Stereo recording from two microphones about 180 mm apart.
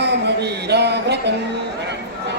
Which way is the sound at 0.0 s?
70° right (ahead or behind).